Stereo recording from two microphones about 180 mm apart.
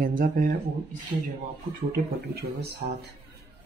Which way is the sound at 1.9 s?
65° right (ahead or behind).